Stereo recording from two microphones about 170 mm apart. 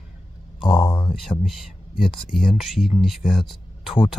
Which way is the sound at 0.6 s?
5° left (ahead or behind).